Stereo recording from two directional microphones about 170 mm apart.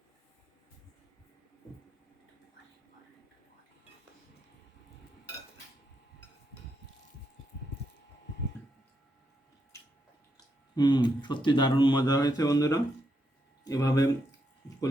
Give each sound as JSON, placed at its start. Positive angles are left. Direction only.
{"t": 10.8, "sound": "speech", "side_deg": 25}